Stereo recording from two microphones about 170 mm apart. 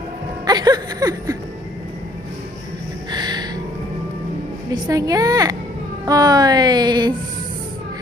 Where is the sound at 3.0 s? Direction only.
25° right (ahead or behind).